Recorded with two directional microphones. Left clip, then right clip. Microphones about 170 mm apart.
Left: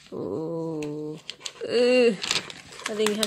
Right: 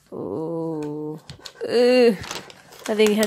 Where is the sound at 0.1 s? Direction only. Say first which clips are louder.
Right 3 dB; 10° right (ahead or behind).